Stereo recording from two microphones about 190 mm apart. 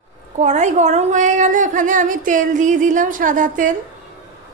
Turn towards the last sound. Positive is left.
turn(degrees=-45)  # may be behind; listen again after turning